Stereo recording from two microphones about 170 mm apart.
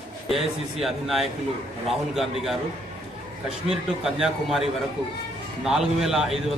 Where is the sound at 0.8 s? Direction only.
Centre (ahead or behind).